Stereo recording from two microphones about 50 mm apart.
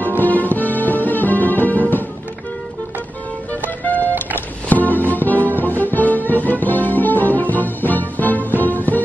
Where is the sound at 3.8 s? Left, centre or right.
Left.